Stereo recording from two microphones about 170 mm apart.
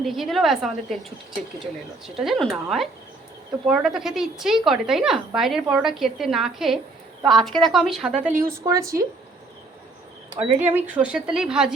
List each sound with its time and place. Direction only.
0.0 s speech: centre (ahead or behind)
2.0 s speech: centre (ahead or behind)
8.6 s speech: 20° right (ahead or behind)
10.3 s speech: 10° right (ahead or behind)